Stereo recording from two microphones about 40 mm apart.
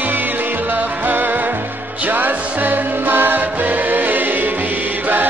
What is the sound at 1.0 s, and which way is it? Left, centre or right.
Music, right.